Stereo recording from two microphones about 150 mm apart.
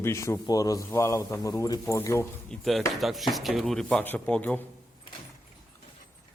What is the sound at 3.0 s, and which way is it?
Speech, centre (ahead or behind).